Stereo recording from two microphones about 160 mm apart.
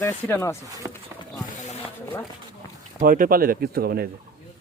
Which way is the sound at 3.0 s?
60° right (ahead or behind).